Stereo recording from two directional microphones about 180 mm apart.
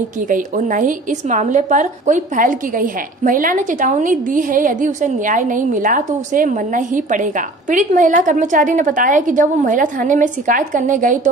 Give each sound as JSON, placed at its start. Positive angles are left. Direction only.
{"t": 0.3, "sound": "a woman's voice", "side_deg": -45}